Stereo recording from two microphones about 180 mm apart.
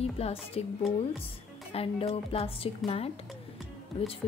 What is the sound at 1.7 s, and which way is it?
Speech, 30° left (ahead or behind).